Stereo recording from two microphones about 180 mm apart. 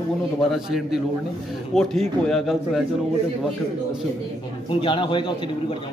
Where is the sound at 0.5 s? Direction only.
Centre (ahead or behind).